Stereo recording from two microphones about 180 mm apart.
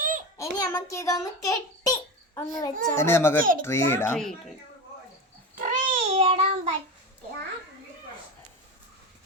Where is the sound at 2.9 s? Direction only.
15° left (ahead or behind).